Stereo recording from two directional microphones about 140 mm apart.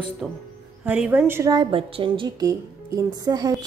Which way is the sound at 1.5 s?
35° right (ahead or behind).